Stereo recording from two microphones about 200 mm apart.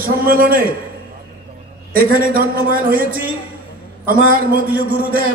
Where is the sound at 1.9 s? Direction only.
45° right (ahead or behind).